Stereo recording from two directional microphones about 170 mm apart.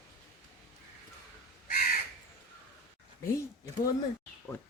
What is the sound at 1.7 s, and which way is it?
Crow, 55° left (ahead or behind).